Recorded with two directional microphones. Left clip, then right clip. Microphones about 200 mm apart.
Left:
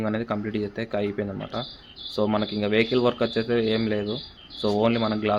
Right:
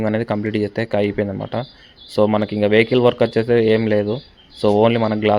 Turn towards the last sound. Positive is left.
turn(degrees=-30)  # may be behind; listen again after turning